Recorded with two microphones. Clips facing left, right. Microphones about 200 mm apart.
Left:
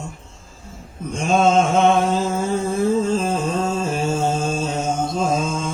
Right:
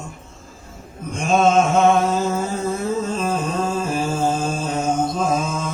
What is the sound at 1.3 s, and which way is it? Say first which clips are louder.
Mantra: even; 30° left (ahead or behind).